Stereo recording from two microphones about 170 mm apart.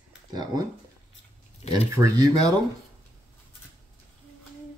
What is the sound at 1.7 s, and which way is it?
Speech, 20° right (ahead or behind).